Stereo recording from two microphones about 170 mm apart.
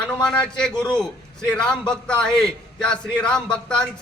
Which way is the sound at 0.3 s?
5° left (ahead or behind).